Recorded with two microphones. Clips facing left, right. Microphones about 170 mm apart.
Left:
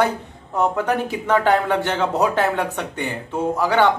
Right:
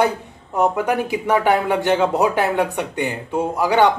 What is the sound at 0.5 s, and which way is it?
Speech, 10° right (ahead or behind).